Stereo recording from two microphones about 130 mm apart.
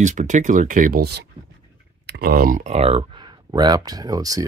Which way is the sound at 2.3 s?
90° right.